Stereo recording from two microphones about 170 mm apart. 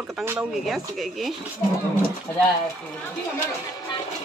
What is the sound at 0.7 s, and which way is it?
Speech, centre (ahead or behind).